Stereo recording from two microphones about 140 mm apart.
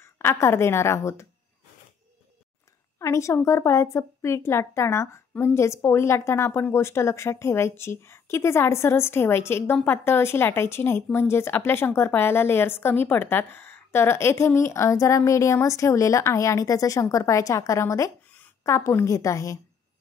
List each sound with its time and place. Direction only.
0.0 s a woman's voice: 20° left (ahead or behind)
3.0 s a woman's voice: 20° left (ahead or behind)